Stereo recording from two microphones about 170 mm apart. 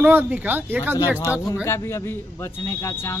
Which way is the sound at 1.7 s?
15° left (ahead or behind).